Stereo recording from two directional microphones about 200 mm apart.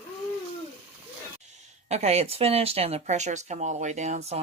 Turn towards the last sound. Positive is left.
turn(degrees=-35)  # may be behind; listen again after turning